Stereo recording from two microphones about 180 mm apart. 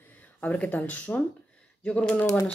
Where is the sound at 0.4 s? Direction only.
10° left (ahead or behind).